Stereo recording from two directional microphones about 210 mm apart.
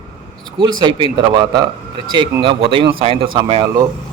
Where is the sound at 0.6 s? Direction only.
20° right (ahead or behind).